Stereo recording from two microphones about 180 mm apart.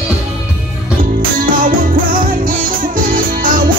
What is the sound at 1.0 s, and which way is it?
Music, 50° right (ahead or behind).